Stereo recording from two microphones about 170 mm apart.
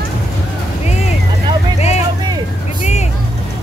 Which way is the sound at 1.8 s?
40° left (ahead or behind).